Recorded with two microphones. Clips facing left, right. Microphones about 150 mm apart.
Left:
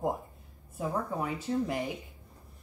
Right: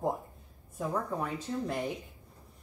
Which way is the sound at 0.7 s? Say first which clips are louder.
Left 1 dB; 5° left (ahead or behind).